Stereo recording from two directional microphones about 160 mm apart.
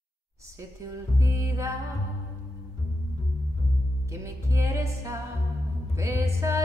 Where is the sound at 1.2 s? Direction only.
20° right (ahead or behind).